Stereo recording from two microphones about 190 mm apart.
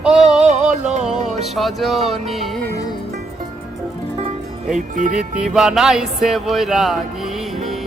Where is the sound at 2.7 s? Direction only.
20° left (ahead or behind).